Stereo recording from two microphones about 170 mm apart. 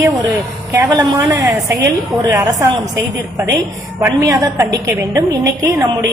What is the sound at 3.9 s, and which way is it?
A woman's voice, 15° right (ahead or behind).